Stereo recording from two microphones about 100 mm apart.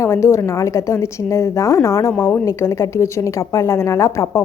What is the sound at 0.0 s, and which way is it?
A woman's voice, 30° left (ahead or behind).